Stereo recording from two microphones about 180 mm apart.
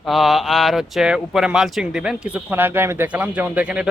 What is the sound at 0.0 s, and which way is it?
Speech, centre (ahead or behind).